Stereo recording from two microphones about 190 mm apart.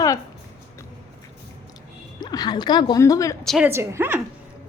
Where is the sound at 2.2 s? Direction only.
20° left (ahead or behind).